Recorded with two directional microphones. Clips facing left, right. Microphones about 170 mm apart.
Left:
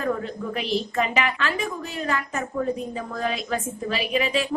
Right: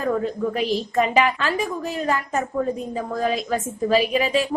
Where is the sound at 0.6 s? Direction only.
40° right (ahead or behind).